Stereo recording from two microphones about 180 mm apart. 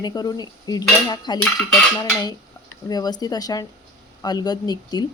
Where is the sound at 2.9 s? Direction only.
20° left (ahead or behind).